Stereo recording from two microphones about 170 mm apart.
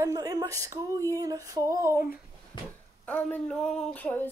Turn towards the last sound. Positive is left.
turn(degrees=10)  # may be behind; listen again after turning